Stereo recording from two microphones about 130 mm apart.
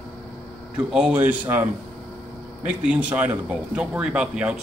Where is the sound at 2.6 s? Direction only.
10° right (ahead or behind).